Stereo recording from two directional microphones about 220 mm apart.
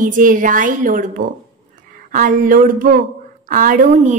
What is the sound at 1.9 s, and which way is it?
Speech, 35° right (ahead or behind).